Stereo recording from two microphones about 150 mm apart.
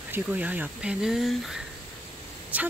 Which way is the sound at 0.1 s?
10° right (ahead or behind).